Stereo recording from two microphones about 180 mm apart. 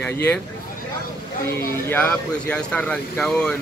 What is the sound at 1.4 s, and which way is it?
Speech, 10° left (ahead or behind).